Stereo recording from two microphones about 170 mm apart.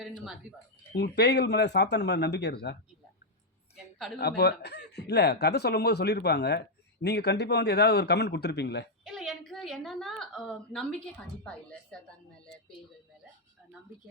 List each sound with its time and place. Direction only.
0.9 s a man's voice: 75° left (ahead or behind)
3.8 s a woman's voice: centre (ahead or behind)
4.2 s a man's voice: 75° left (ahead or behind)
9.0 s a woman's voice: centre (ahead or behind)